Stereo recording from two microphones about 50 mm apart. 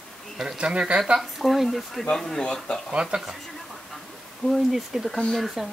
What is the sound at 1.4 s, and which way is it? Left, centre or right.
Speech, centre.